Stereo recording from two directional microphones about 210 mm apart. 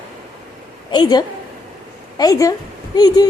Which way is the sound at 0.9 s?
20° left (ahead or behind).